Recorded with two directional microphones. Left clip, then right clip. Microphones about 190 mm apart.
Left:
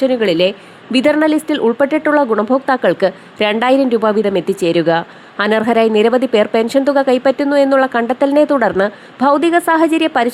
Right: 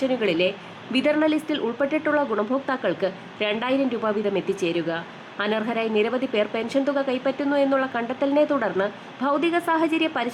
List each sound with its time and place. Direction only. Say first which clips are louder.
0.0 s speech: left 9 dB; 35° left (ahead or behind)